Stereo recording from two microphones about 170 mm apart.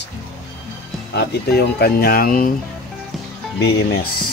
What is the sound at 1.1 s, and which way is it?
Speech, 75° left (ahead or behind).